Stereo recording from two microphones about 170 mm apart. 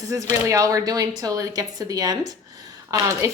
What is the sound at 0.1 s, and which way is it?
A woman's voice, 20° right (ahead or behind).